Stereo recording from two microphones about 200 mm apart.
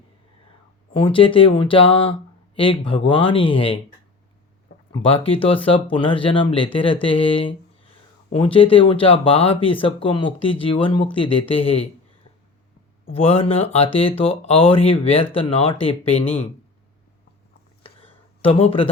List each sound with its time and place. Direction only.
0.9 s speech: 25° left (ahead or behind)
13.1 s speech: 30° left (ahead or behind)
17.8 s a sound: 30° left (ahead or behind)